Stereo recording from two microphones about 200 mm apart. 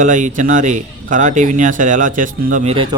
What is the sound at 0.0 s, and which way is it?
Speech, 40° right (ahead or behind).